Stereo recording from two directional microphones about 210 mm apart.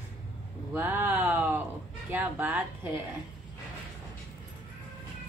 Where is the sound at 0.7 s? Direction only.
10° right (ahead or behind).